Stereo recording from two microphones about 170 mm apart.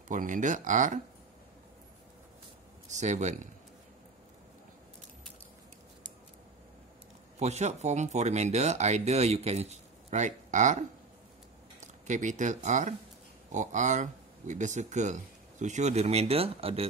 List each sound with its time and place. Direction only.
0.1 s speech: 50° right (ahead or behind)
2.9 s speech: 45° right (ahead or behind)
7.3 s speech: 40° right (ahead or behind)